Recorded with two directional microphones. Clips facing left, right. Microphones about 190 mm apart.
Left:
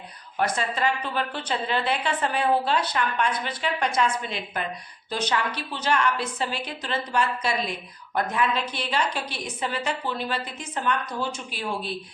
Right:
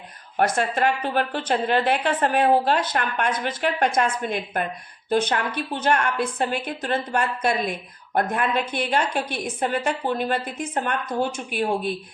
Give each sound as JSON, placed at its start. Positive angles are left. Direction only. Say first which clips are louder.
{"t": 0.3, "sound": "a woman's voice", "louder": "right 4 dB", "side_deg": -50}